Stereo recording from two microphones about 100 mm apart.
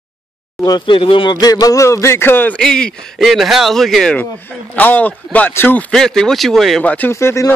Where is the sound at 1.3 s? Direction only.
40° left (ahead or behind); by 2.6 s 20° left (ahead or behind).